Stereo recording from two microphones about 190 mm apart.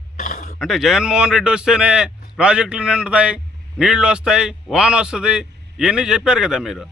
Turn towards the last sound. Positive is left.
turn(degrees=0)  # may be behind; listen again after turning